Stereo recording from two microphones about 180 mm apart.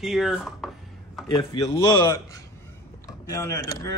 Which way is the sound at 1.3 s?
25° left (ahead or behind).